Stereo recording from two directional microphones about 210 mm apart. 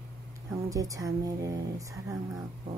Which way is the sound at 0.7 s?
15° right (ahead or behind).